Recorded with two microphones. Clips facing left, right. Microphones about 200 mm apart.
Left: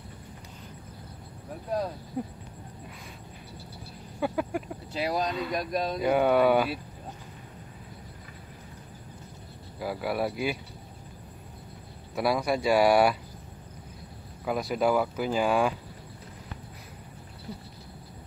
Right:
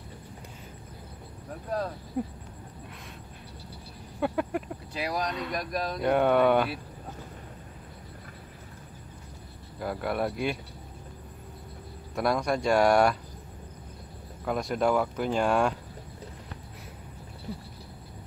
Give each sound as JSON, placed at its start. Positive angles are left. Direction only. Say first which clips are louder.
{"t": 2.2, "sound": "speech", "louder": "right 2 dB", "side_deg": 0}
{"t": 4.2, "sound": "speech", "louder": "right 1 dB", "side_deg": 0}
{"t": 4.9, "sound": "speech", "louder": "left 3 dB", "side_deg": 25}
{"t": 5.2, "sound": "speech", "louder": "left 2 dB", "side_deg": 0}
{"t": 5.6, "sound": "speech", "louder": "left 3 dB", "side_deg": 25}
{"t": 5.9, "sound": "speech", "louder": "even", "side_deg": 5}
{"t": 9.8, "sound": "speech", "louder": "even", "side_deg": 5}
{"t": 12.2, "sound": "speech", "louder": "even", "side_deg": 5}
{"t": 14.4, "sound": "speech", "louder": "even", "side_deg": 5}